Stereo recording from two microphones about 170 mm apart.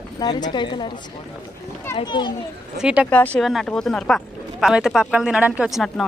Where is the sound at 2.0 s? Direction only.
25° left (ahead or behind).